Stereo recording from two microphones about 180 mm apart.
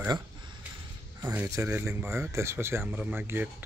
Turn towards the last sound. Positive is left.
turn(degrees=-10)  # may be behind; listen again after turning